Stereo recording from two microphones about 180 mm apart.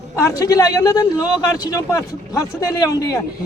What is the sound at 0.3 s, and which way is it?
Speech, 20° left (ahead or behind).